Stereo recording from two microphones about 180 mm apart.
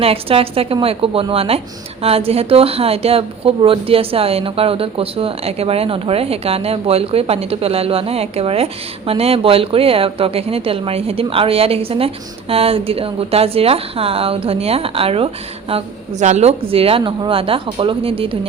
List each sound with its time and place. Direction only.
0.0 s a woman's voice: 30° right (ahead or behind)